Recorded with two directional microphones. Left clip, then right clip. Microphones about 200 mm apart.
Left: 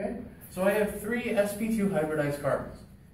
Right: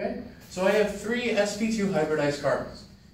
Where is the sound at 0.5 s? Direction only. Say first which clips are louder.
Right 3 dB; 5° right (ahead or behind).